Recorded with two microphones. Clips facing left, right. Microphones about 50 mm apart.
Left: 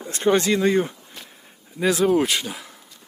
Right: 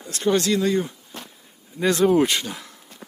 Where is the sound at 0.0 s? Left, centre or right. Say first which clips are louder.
Left 2 dB; left.